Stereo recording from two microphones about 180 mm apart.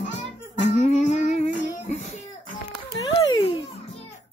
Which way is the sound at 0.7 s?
40° left (ahead or behind).